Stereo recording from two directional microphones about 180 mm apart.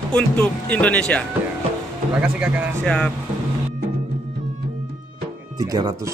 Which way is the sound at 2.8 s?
5° left (ahead or behind).